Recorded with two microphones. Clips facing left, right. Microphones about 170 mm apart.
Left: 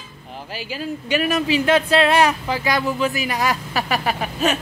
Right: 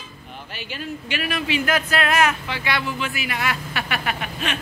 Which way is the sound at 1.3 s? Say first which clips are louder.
Left 4 dB; 30° left (ahead or behind).